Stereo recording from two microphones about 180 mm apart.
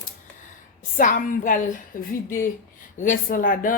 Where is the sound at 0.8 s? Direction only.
45° left (ahead or behind).